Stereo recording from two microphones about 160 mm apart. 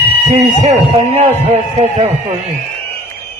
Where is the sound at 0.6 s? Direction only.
40° right (ahead or behind).